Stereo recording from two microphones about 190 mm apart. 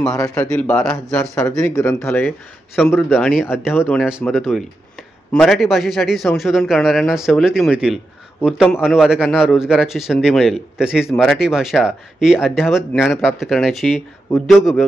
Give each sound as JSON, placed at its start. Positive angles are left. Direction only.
{"t": 0.1, "sound": "speech", "side_deg": 20}
{"t": 0.4, "sound": "speech", "side_deg": 5}
{"t": 3.4, "sound": "speech", "side_deg": 10}
{"t": 4.3, "sound": "speech", "side_deg": 0}